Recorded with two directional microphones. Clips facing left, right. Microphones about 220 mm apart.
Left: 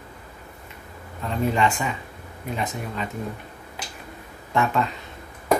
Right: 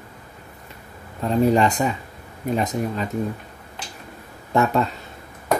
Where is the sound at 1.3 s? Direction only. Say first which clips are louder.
Right 5 dB; 40° right (ahead or behind).